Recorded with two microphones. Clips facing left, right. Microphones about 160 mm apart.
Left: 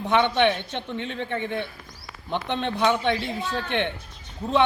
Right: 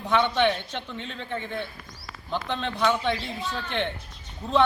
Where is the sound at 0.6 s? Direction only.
20° left (ahead or behind).